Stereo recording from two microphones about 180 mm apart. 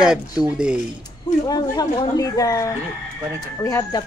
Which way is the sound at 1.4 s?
20° left (ahead or behind).